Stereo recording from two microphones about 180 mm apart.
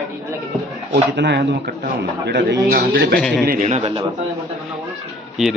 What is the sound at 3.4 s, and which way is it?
Speech, 50° right (ahead or behind).